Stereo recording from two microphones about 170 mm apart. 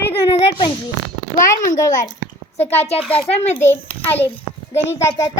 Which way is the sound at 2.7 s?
40° left (ahead or behind).